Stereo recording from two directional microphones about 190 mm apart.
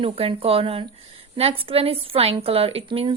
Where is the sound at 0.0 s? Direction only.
30° right (ahead or behind).